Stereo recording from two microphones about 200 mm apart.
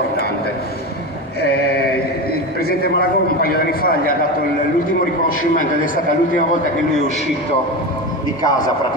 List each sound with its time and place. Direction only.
2.6 s a man's voice: 50° left (ahead or behind)
8.5 s a man's voice: 20° left (ahead or behind)